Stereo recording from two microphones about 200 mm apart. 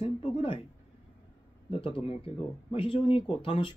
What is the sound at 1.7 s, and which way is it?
Speech, 25° left (ahead or behind).